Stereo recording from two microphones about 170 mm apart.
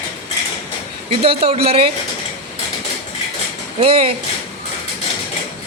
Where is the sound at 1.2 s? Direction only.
35° right (ahead or behind).